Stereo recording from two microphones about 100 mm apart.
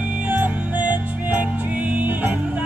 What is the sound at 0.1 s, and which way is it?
Music, 15° right (ahead or behind).